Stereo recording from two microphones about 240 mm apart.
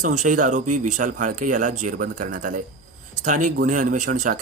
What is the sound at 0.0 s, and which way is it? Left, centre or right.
A man's voice, right.